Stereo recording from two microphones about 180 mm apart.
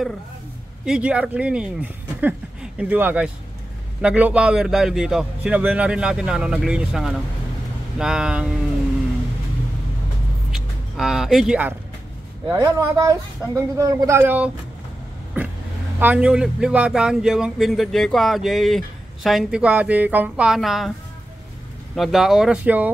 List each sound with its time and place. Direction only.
0.8 s speech: 5° right (ahead or behind)
10.5 s music: centre (ahead or behind)
12.4 s speech: 20° right (ahead or behind)
16.0 s speech: 10° right (ahead or behind)
21.9 s speech: centre (ahead or behind)